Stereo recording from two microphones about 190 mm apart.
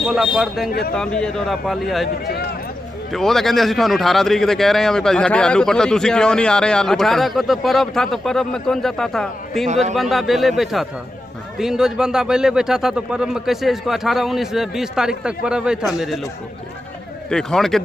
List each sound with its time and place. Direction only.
0.0 s speech: centre (ahead or behind)
0.7 s speech: 50° left (ahead or behind)
0.9 s speech: 5° left (ahead or behind)
3.1 s speech: centre (ahead or behind)
9.7 s a man's voice: 40° right (ahead or behind)
9.9 s speech: centre (ahead or behind)
17.3 s speech: 5° left (ahead or behind)